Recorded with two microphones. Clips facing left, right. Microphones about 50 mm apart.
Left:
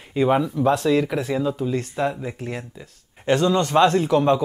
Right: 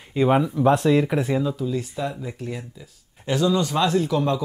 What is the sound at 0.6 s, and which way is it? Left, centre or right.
Speech, right.